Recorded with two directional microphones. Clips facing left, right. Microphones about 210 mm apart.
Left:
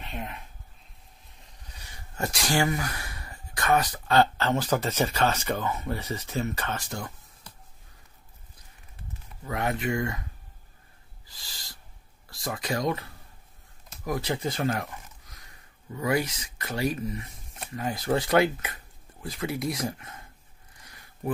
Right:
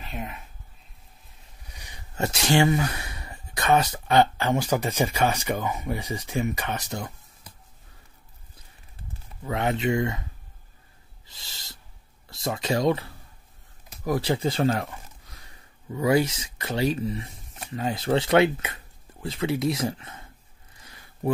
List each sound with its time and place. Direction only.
0.0 s speech: centre (ahead or behind)
1.7 s speech: 15° right (ahead or behind)
9.5 s speech: 25° right (ahead or behind)
11.2 s owl: 25° right (ahead or behind)
12.3 s speech: 25° right (ahead or behind)